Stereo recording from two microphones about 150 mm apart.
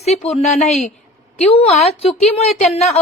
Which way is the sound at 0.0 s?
45° left (ahead or behind).